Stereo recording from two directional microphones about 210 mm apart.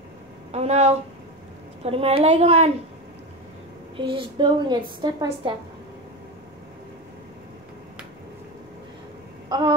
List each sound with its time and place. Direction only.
0.5 s a woman's voice: 30° right (ahead or behind)
3.9 s a woman's voice: 25° right (ahead or behind)
9.5 s a sound: 20° right (ahead or behind)